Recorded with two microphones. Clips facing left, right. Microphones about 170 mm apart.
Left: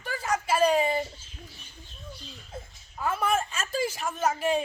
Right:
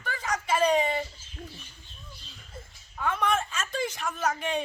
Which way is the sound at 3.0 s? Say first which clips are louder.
Left 1 dB; 5° left (ahead or behind).